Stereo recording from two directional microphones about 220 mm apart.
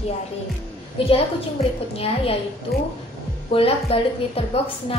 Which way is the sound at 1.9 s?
25° left (ahead or behind).